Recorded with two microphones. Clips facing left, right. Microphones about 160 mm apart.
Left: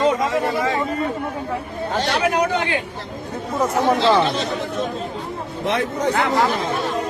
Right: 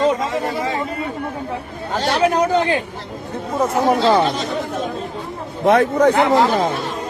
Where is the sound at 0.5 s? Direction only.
25° right (ahead or behind).